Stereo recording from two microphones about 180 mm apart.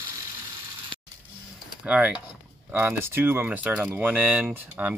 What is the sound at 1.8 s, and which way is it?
Speech, 5° right (ahead or behind).